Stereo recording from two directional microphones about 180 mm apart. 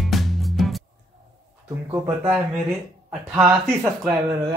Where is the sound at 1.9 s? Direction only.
10° right (ahead or behind).